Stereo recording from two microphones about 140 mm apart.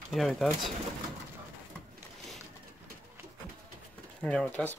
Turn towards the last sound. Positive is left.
turn(degrees=10)  # may be behind; listen again after turning